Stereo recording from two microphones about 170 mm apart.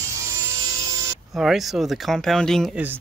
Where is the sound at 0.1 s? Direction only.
15° right (ahead or behind).